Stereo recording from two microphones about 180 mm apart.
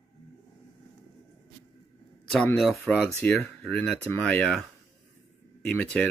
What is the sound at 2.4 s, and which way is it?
Speech, 5° left (ahead or behind).